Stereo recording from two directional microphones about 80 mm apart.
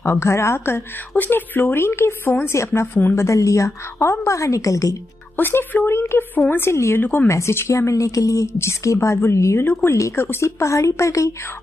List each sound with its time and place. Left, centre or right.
0.0 s a woman's voice: left
5.3 s a woman's voice: left
7.2 s a woman's voice: left